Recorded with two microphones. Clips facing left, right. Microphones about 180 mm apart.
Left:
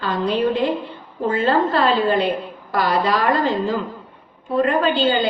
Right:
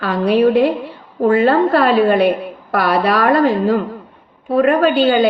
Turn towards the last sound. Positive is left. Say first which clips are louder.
# right 5 dB
turn(degrees=-60)  # may be behind; listen again after turning